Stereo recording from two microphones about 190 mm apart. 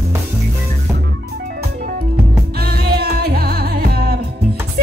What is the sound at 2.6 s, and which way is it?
Music, 55° right (ahead or behind).